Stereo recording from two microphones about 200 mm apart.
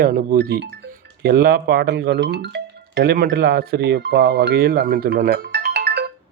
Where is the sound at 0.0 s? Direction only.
45° right (ahead or behind).